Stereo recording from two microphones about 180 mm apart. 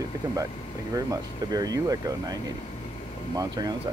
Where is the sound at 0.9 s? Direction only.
20° right (ahead or behind).